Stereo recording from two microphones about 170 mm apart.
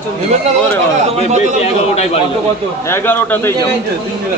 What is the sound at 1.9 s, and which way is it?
Speech, 40° left (ahead or behind).